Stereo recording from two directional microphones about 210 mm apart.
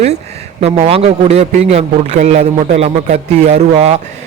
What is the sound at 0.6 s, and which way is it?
A man's voice, 30° right (ahead or behind).